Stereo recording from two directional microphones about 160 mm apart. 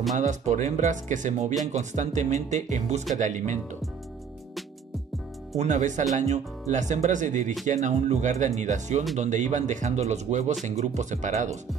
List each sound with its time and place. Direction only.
0.1 s speech: 50° right (ahead or behind)
5.6 s speech: 50° right (ahead or behind)